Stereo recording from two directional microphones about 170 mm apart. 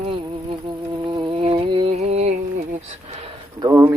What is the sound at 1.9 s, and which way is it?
Music, 40° right (ahead or behind).